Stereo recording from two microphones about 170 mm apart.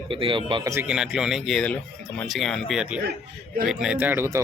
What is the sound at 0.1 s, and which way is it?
Speech, 30° right (ahead or behind).